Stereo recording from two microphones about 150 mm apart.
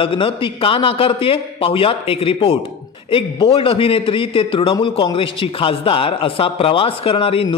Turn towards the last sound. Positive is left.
turn(degrees=35)  # may be behind; listen again after turning